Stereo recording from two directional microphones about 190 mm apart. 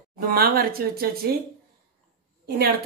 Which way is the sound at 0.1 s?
50° right (ahead or behind).